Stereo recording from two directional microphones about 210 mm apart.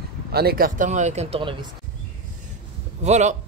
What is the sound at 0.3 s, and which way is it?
A man's voice, 50° right (ahead or behind).